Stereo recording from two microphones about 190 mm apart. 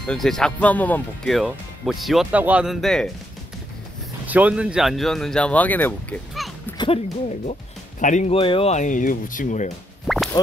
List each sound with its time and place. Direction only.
0.0 s speech: centre (ahead or behind)
4.3 s speech: 5° right (ahead or behind)
6.8 s speech: 35° left (ahead or behind)
10.0 s plop: centre (ahead or behind)